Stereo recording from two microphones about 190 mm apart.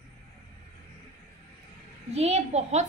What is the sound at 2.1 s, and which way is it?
Speech, 35° right (ahead or behind).